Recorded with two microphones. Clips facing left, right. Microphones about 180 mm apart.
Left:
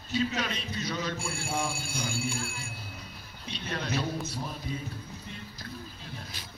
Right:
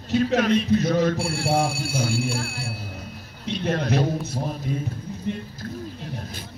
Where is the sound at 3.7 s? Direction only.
55° right (ahead or behind).